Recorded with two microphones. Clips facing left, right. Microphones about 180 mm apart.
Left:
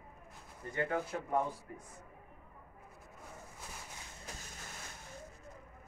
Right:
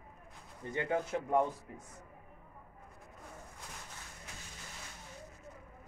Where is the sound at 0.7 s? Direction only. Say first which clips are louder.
Right 2 dB; 20° right (ahead or behind).